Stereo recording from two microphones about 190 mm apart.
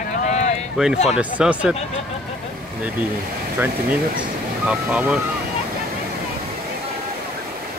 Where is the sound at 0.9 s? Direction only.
35° left (ahead or behind).